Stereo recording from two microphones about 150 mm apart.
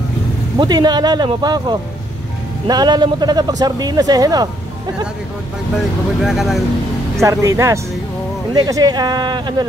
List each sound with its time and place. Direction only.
0.6 s speech: 30° right (ahead or behind)
6.2 s speech: centre (ahead or behind)
7.2 s speech: 20° right (ahead or behind)